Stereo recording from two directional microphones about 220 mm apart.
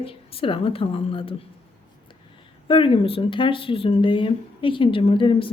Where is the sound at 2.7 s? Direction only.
25° left (ahead or behind).